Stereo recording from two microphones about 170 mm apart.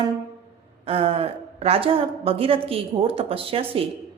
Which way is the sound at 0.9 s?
35° right (ahead or behind).